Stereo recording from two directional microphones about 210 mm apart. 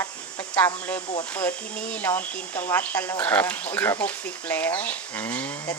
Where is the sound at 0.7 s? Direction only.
10° left (ahead or behind).